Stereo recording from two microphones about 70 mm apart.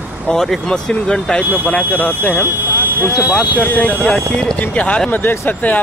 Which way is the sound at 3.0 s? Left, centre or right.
Left.